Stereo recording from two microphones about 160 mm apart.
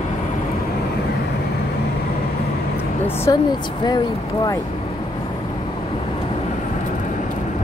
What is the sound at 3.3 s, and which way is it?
Speech, 25° left (ahead or behind).